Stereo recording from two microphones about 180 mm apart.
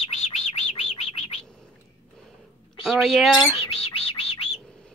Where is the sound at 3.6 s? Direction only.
35° left (ahead or behind).